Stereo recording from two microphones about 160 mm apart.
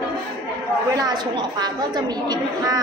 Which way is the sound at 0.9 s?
25° right (ahead or behind).